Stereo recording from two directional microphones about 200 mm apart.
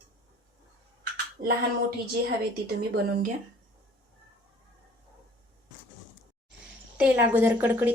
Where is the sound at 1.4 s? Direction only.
45° right (ahead or behind).